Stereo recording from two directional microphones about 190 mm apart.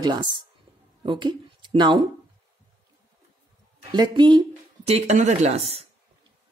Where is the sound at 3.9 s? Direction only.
25° right (ahead or behind).